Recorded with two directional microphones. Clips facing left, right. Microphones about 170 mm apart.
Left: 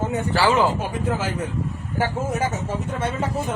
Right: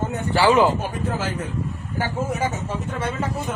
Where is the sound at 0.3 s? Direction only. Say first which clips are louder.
Right 3 dB; 15° right (ahead or behind).